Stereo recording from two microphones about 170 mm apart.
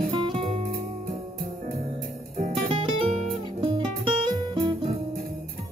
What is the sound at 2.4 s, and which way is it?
Music, 35° right (ahead or behind).